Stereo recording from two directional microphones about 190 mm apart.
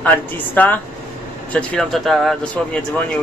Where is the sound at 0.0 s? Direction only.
10° left (ahead or behind).